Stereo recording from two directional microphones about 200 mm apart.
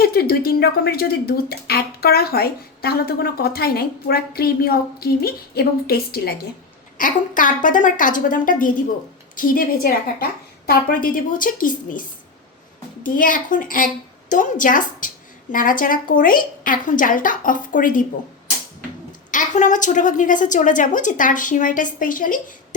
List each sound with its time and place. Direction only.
0.0 s a woman's voice: 50° left (ahead or behind)
19.3 s a woman's voice: 40° left (ahead or behind)